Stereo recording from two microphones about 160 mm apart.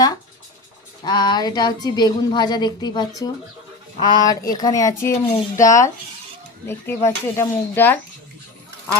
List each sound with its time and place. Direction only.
1.0 s speech: 25° left (ahead or behind)